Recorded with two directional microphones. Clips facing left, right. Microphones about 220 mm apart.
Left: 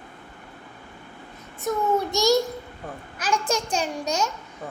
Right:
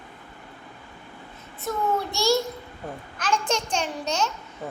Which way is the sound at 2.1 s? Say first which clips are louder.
Left 3 dB; 15° left (ahead or behind).